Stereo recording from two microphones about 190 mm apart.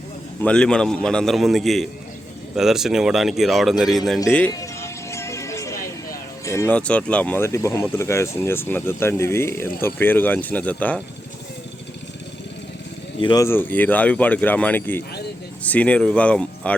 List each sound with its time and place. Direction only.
0.4 s speech: 5° left (ahead or behind)
4.3 s music: 5° left (ahead or behind)
6.4 s speech: 15° left (ahead or behind)
13.1 s speech: 20° left (ahead or behind); by 16.7 s 5° left (ahead or behind)